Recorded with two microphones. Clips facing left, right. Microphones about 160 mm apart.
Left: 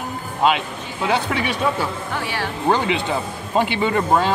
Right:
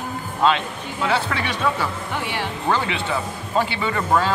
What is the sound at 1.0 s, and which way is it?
Speech, 15° left (ahead or behind).